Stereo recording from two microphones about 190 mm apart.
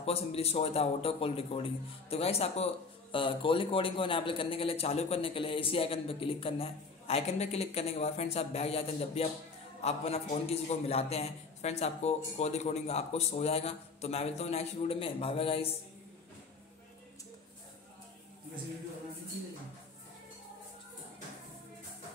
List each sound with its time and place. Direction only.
0.0 s a man's voice: 30° left (ahead or behind)